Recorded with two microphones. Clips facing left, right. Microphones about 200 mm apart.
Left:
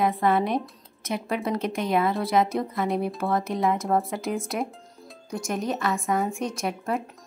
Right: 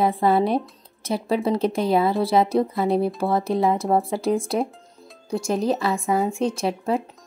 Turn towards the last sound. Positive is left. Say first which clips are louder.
# right 5 dB
turn(degrees=-25)  # may be behind; listen again after turning